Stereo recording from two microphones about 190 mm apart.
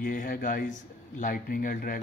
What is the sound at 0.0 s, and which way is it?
Speech, 45° left (ahead or behind).